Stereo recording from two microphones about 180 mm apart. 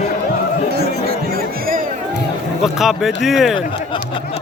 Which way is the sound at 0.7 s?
55° right (ahead or behind).